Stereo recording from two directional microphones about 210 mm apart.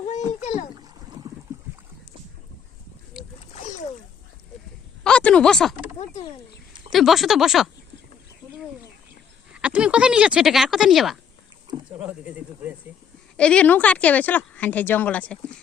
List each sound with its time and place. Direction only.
0.0 s rowboat: 35° left (ahead or behind)
3.5 s splash: 35° left (ahead or behind)
5.0 s a sound: 5° left (ahead or behind)
6.9 s speech: centre (ahead or behind)
9.5 s speech: 5° right (ahead or behind)
13.3 s speech: 5° left (ahead or behind)